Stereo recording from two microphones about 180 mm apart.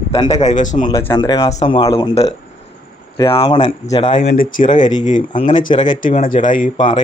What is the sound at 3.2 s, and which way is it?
Speech, 30° left (ahead or behind).